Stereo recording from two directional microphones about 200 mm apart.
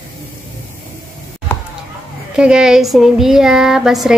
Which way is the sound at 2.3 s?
5° right (ahead or behind).